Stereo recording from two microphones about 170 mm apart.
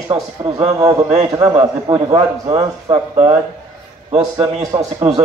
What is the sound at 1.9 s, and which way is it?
A man's voice, 30° right (ahead or behind).